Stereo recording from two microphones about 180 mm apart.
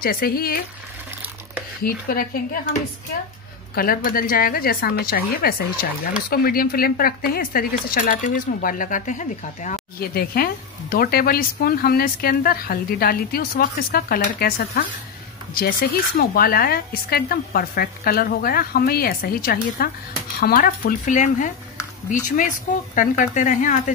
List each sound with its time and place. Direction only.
0.0 s speech: 55° left (ahead or behind)
1.8 s speech: 55° left (ahead or behind)
3.7 s speech: 55° left (ahead or behind)